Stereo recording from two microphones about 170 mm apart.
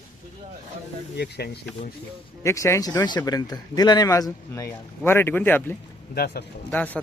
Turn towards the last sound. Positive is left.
turn(degrees=10)  # may be behind; listen again after turning